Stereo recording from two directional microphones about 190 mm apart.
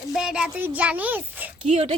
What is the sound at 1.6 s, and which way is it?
Speech, 35° right (ahead or behind).